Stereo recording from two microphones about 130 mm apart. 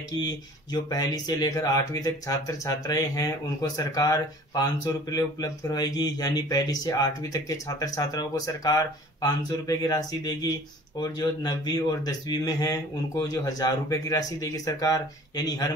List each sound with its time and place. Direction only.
0.1 s speech: 30° left (ahead or behind)